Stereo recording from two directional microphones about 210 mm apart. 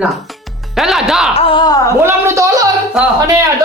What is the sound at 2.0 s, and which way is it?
Speech, 15° right (ahead or behind).